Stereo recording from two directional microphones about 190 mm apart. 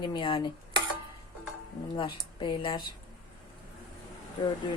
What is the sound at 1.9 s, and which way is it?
Speech, 25° left (ahead or behind).